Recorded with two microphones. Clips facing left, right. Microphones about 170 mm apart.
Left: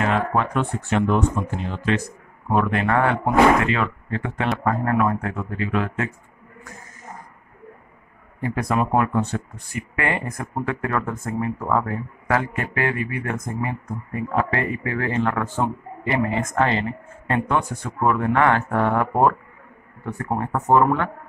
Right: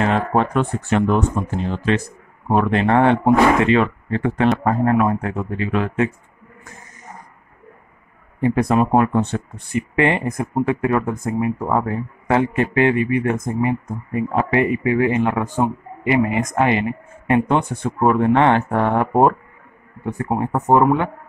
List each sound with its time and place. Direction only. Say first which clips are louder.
0.0 s speech: right 3 dB; 30° right (ahead or behind)
1.6 s a man's voice: right 5 dB; 30° right (ahead or behind)
8.4 s speech: right 6 dB; 25° right (ahead or behind)